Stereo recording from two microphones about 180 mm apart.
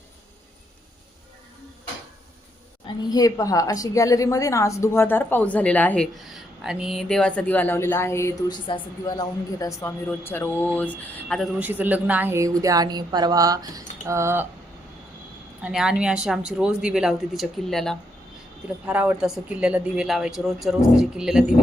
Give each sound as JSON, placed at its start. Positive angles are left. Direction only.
{"t": 3.1, "sound": "a woman's voice", "side_deg": 20}
{"t": 11.6, "sound": "speech", "side_deg": -10}
{"t": 15.6, "sound": "speech", "side_deg": -5}